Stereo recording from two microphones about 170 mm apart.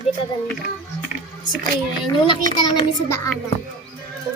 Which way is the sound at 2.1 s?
30° left (ahead or behind).